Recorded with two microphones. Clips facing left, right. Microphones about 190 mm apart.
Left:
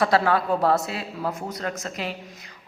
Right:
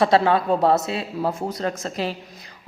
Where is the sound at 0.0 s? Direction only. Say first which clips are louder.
Right 3 dB; 25° right (ahead or behind).